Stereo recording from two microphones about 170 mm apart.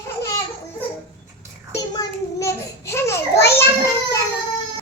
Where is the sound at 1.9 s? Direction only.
15° left (ahead or behind).